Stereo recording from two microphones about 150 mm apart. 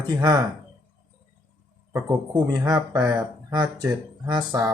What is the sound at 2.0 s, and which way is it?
Speech, 30° right (ahead or behind).